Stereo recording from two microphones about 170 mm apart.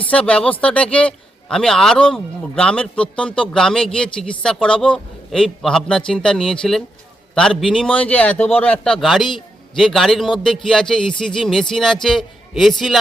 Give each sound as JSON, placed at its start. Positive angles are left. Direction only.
{"t": 0.0, "sound": "a man's voice", "side_deg": 5}